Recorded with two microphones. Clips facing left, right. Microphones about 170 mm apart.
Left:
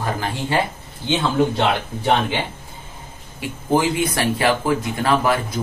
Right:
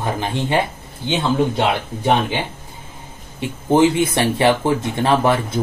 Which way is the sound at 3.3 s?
25° right (ahead or behind).